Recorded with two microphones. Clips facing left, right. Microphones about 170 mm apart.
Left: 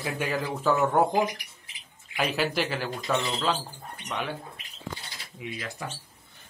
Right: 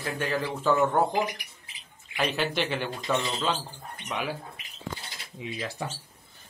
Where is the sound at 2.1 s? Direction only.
5° left (ahead or behind).